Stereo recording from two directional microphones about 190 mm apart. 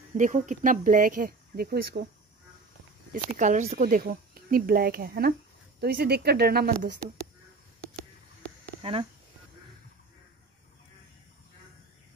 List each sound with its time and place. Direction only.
0.1 s speech: 45° right (ahead or behind)
3.1 s speech: 40° right (ahead or behind)
7.9 s a sound: 5° left (ahead or behind)